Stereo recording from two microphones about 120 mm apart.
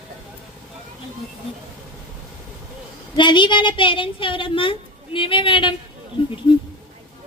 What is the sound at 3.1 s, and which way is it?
Speech, 40° left (ahead or behind).